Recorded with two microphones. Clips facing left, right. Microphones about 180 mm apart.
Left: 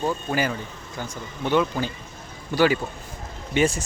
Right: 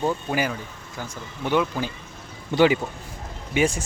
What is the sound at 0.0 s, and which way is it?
A man's voice, 10° right (ahead or behind).